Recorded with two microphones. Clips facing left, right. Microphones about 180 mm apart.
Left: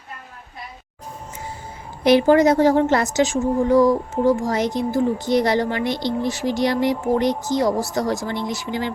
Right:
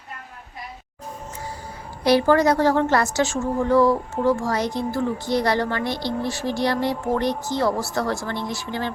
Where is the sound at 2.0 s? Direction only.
20° left (ahead or behind).